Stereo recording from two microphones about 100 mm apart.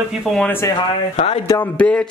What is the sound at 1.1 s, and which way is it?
Speech, 90° left.